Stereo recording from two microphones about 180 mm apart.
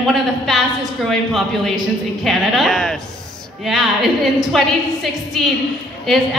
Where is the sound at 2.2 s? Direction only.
Centre (ahead or behind).